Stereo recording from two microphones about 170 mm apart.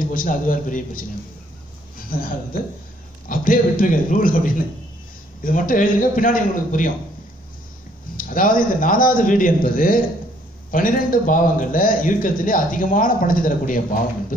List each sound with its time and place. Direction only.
0.0 s a man's voice: 55° left (ahead or behind)
2.1 s a man's voice: 55° left (ahead or behind)
8.2 s a man's voice: 55° left (ahead or behind)